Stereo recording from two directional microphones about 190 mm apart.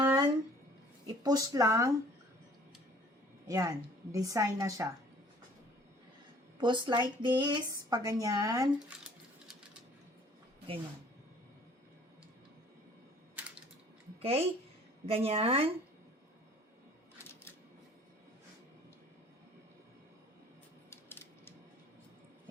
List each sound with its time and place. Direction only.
0.0 s a sound: 20° right (ahead or behind)
1.0 s speech: 20° right (ahead or behind)
3.4 s speech: 15° right (ahead or behind)
6.6 s speech: 25° right (ahead or behind)
14.2 s a woman's voice: 30° right (ahead or behind)
20.9 s a sound: 10° left (ahead or behind)